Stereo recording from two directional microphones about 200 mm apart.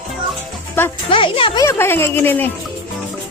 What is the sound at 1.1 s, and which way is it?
Speech, 25° left (ahead or behind).